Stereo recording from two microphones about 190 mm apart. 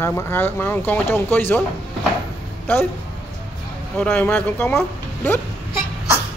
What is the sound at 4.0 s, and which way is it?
Speech, 10° left (ahead or behind).